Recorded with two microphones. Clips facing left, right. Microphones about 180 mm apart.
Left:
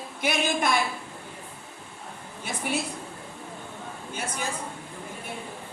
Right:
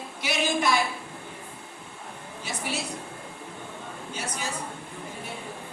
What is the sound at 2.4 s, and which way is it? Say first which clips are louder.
Speech: left 3 dB; 55° left (ahead or behind).